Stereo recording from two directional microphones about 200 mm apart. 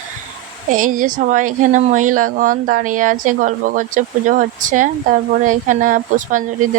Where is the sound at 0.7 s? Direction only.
45° right (ahead or behind).